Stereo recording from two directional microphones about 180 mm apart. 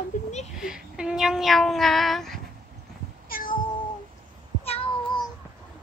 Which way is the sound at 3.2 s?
55° left (ahead or behind).